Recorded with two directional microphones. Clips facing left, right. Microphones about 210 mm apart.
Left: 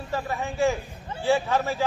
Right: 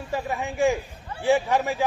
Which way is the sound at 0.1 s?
15° right (ahead or behind).